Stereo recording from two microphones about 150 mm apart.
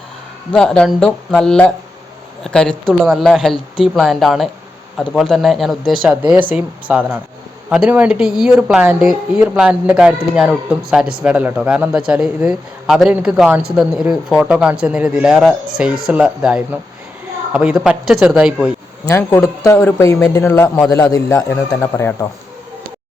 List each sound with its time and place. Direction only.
0.5 s speech: 5° left (ahead or behind)
19.0 s speech: 20° left (ahead or behind)